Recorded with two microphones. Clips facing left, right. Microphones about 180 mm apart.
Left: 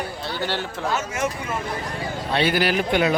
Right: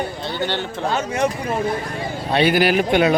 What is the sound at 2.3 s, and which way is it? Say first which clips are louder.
Speech: right 5 dB; 15° right (ahead or behind).